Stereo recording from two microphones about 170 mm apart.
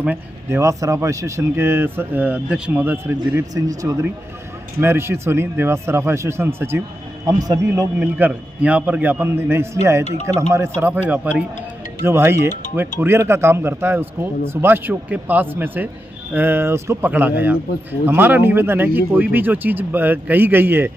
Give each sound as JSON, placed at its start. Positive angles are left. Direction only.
{"t": 0.0, "sound": "a man's voice", "side_deg": -10}
{"t": 8.0, "sound": "speech", "side_deg": -10}